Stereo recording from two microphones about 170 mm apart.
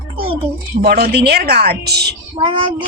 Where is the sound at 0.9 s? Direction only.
65° right (ahead or behind).